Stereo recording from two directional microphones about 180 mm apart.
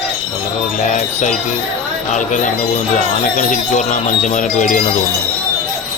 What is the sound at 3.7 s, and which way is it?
Speech, 40° left (ahead or behind).